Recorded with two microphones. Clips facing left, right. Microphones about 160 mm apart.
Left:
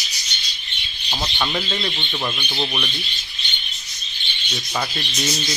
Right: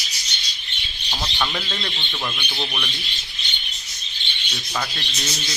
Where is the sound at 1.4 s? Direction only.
10° left (ahead or behind).